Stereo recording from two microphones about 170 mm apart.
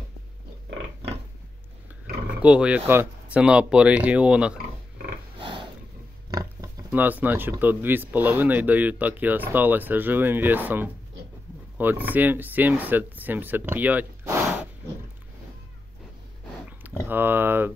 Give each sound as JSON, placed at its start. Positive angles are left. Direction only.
{"t": 2.4, "sound": "speech", "side_deg": -5}
{"t": 5.4, "sound": "sniff", "side_deg": -30}
{"t": 6.3, "sound": "speech", "side_deg": -15}
{"t": 17.1, "sound": "a sound", "side_deg": -10}